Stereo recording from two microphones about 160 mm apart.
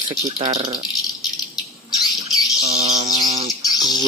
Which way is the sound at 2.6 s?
40° right (ahead or behind).